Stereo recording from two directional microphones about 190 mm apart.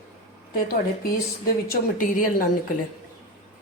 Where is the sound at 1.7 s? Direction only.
45° left (ahead or behind).